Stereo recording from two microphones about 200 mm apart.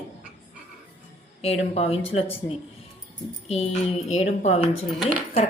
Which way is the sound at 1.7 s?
30° left (ahead or behind).